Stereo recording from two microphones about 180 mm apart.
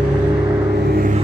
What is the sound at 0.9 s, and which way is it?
Music, 55° right (ahead or behind).